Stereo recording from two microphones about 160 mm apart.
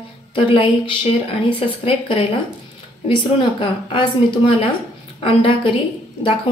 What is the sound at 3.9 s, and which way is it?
Speech, 35° left (ahead or behind).